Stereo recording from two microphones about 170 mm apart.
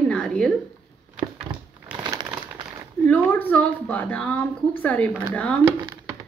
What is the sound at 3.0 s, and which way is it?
A woman's voice, 10° left (ahead or behind).